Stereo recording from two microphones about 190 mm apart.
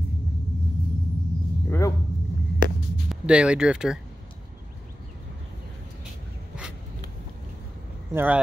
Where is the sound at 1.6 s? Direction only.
15° left (ahead or behind).